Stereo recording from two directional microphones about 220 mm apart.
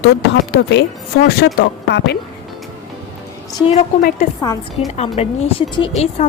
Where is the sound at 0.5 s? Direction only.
50° left (ahead or behind).